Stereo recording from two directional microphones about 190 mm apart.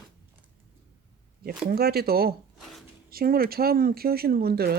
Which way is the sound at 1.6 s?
55° right (ahead or behind).